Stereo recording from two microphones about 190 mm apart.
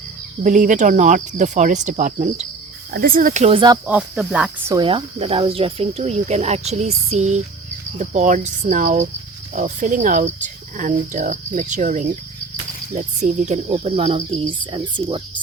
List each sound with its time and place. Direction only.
0.4 s speech: 40° right (ahead or behind)
2.9 s speech: 50° right (ahead or behind); by 3.8 s 25° right (ahead or behind)
3.8 s speech: 5° right (ahead or behind)
4.7 s speech: 25° right (ahead or behind)